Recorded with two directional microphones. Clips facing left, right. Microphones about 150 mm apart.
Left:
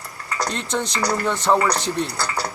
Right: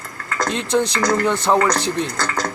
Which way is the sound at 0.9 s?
10° left (ahead or behind).